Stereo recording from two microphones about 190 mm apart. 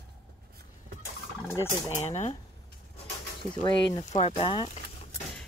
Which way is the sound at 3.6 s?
20° left (ahead or behind).